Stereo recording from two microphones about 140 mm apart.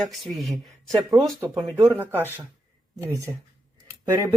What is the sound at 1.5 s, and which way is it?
Speech, 20° right (ahead or behind).